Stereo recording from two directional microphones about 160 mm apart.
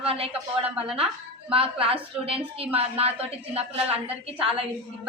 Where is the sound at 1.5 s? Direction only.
35° right (ahead or behind).